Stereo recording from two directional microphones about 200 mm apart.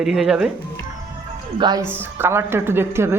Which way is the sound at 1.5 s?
20° right (ahead or behind).